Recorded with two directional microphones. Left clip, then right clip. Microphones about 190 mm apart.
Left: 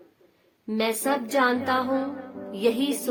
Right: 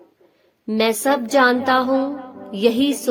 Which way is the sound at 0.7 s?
40° right (ahead or behind).